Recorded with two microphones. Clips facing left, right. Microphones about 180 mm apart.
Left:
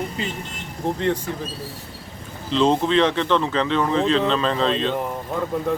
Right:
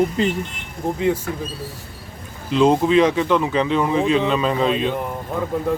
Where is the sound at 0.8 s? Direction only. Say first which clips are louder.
Right 2 dB; 5° right (ahead or behind).